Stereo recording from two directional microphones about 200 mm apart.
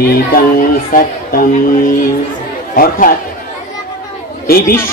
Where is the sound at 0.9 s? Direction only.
45° left (ahead or behind).